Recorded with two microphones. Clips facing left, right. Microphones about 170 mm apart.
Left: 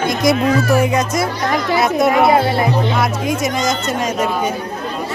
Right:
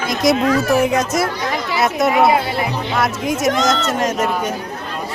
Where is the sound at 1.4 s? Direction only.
45° left (ahead or behind).